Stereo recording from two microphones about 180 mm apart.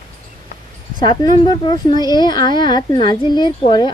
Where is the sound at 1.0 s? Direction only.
25° left (ahead or behind).